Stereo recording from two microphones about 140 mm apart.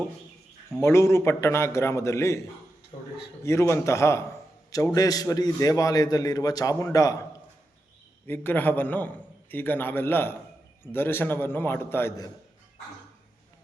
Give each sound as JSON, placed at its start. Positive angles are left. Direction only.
{"t": 0.8, "sound": "a man's voice", "side_deg": 20}
{"t": 3.4, "sound": "a man's voice", "side_deg": 20}
{"t": 8.3, "sound": "a man's voice", "side_deg": 15}